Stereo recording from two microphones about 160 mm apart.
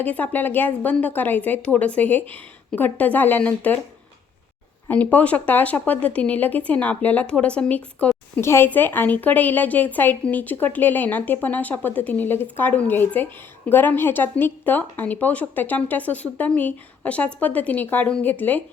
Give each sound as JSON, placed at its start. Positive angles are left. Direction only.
{"t": 0.0, "sound": "speech", "side_deg": 10}
{"t": 4.9, "sound": "speech", "side_deg": 10}